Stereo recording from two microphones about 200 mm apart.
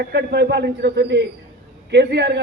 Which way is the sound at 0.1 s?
55° right (ahead or behind).